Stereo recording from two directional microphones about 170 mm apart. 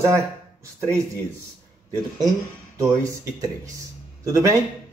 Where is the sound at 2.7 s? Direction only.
20° right (ahead or behind).